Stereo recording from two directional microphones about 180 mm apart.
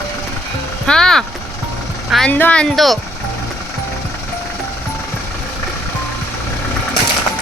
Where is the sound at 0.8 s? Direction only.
5° left (ahead or behind).